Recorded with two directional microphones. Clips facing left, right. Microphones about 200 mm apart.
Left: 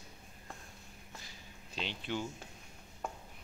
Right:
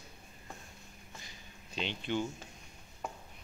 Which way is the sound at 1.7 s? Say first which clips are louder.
Right 4 dB; 5° left (ahead or behind).